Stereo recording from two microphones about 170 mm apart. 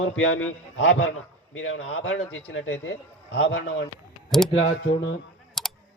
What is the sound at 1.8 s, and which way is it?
A man's voice, 90° left.